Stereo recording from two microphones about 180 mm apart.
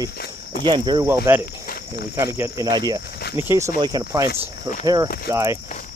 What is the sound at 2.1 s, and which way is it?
Speech, 15° right (ahead or behind).